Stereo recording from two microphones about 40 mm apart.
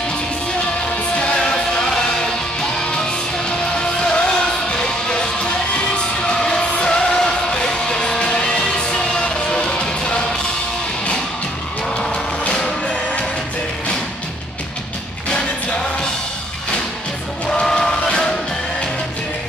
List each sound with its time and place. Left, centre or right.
1.1 s music: left
12.6 s music: left
17.5 s music: centre